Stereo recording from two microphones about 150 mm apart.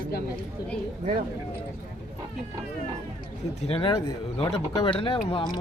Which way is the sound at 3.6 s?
40° left (ahead or behind).